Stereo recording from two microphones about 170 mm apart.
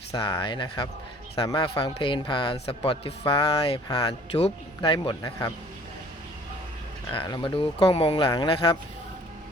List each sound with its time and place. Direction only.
0.1 s a man's voice: 20° left (ahead or behind)
7.1 s a man's voice: 30° left (ahead or behind)